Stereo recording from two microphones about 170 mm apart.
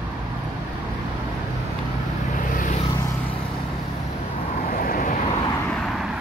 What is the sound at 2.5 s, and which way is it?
Vehicle, 50° left (ahead or behind).